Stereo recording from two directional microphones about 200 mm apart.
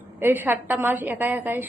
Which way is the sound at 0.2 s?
10° right (ahead or behind).